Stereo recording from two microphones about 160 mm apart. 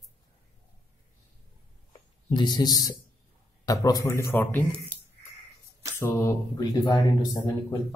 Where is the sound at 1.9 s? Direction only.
30° left (ahead or behind).